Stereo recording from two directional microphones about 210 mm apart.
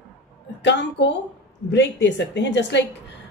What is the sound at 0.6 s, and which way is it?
A woman's voice, 55° left (ahead or behind).